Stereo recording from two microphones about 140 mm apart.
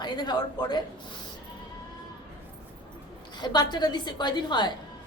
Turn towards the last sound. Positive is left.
turn(degrees=30)  # may be behind; listen again after turning